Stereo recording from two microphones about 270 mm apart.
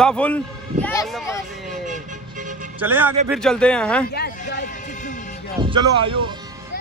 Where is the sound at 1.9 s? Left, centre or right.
Right.